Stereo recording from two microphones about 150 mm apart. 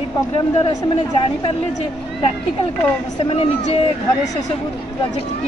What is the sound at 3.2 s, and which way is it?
Speech, 40° left (ahead or behind).